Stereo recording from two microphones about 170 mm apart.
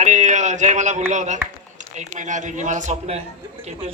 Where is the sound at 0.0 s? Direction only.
45° right (ahead or behind).